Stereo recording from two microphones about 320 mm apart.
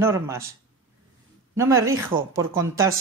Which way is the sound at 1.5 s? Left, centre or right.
Centre.